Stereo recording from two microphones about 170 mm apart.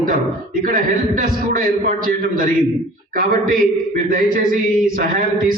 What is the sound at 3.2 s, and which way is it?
A man's voice, 55° right (ahead or behind).